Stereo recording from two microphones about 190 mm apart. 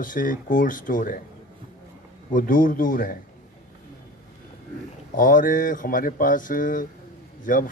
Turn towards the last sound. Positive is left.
turn(degrees=45)  # may be behind; listen again after turning